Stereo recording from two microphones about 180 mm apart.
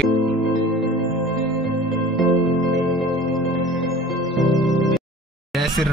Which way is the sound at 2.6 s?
20° right (ahead or behind).